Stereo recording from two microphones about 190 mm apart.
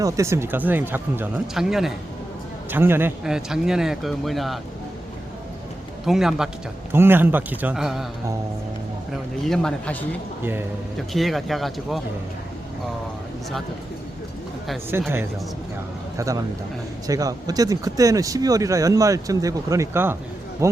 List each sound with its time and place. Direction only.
0.0 s speech: 15° right (ahead or behind)
6.1 s speech: centre (ahead or behind)
9.5 s speech: 5° left (ahead or behind)
14.9 s speech: 10° right (ahead or behind)
16.1 s speech: 15° right (ahead or behind)